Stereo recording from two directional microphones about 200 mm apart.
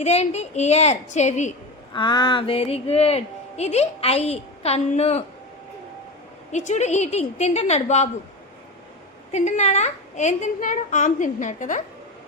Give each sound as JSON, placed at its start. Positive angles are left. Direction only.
{"t": 0.0, "sound": "a woman's voice", "side_deg": 35}
{"t": 1.9, "sound": "a woman's voice", "side_deg": 20}
{"t": 6.5, "sound": "a woman's voice", "side_deg": 35}
{"t": 9.3, "sound": "a woman's voice", "side_deg": 35}